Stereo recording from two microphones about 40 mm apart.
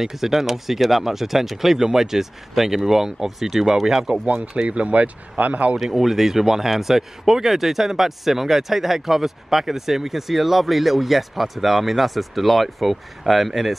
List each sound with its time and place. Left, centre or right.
0.0 s speech: centre
4.1 s speech: right
5.8 s speech: centre